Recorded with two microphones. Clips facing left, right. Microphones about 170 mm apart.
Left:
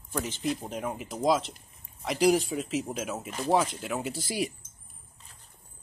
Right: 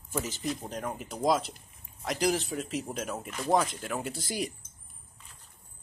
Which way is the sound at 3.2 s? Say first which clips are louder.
Left 3 dB; 35° left (ahead or behind).